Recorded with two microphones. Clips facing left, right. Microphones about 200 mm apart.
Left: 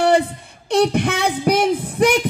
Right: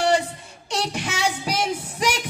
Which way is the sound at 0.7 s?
55° left (ahead or behind).